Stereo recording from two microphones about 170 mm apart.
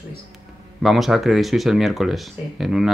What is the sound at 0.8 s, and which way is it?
Speech, centre (ahead or behind).